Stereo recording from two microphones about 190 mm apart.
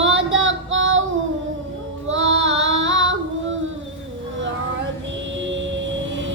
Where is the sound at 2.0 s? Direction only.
80° right.